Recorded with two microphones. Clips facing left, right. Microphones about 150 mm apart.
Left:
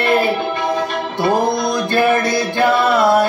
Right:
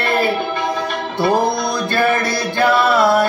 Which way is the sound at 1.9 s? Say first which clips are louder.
Left 3 dB; 20° left (ahead or behind).